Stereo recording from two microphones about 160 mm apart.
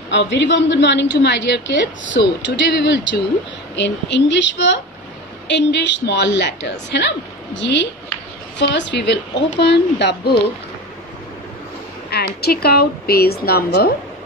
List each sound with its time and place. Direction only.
0.1 s a woman's voice: 90° left
8.5 s a woman's voice: 90° left
12.1 s a woman's voice: 85° left